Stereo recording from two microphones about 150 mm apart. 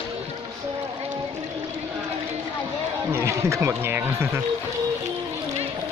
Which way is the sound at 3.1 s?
15° right (ahead or behind).